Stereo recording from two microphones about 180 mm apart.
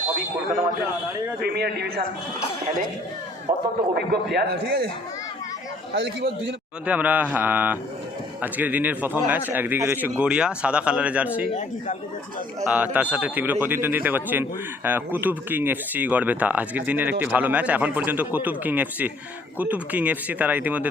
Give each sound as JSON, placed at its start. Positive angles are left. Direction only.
{"t": 1.4, "sound": "speech", "side_deg": -65}
{"t": 3.5, "sound": "speech", "side_deg": -20}
{"t": 3.9, "sound": "speech", "side_deg": -60}
{"t": 5.9, "sound": "a man's voice", "side_deg": -75}
{"t": 6.8, "sound": "speech", "side_deg": -10}
{"t": 12.6, "sound": "speech", "side_deg": -5}